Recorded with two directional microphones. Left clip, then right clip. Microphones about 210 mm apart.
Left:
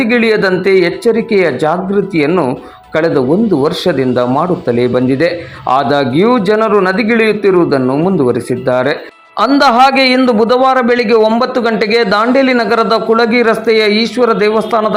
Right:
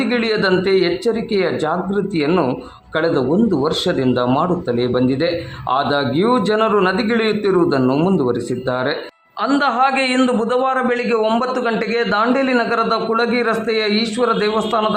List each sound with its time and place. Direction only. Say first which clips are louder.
0.0 s a man's voice: left 7 dB; 15° left (ahead or behind)